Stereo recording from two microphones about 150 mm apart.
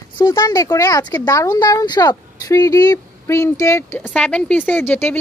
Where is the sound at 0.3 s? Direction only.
20° left (ahead or behind).